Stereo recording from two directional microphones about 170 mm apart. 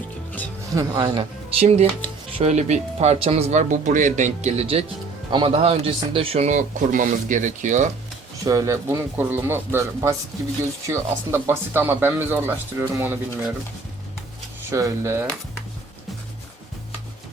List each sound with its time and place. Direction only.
0.7 s speech: 20° right (ahead or behind); by 7.9 s 45° right (ahead or behind)
8.4 s speech: 20° right (ahead or behind)
14.6 s speech: 15° right (ahead or behind)